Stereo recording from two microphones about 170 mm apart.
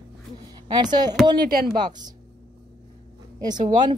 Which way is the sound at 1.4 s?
60° right (ahead or behind).